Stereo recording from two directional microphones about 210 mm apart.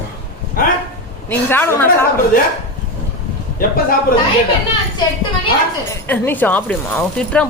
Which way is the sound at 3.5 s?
40° left (ahead or behind).